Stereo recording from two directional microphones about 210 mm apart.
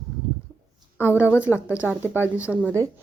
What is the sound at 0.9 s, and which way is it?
Speech, 10° right (ahead or behind).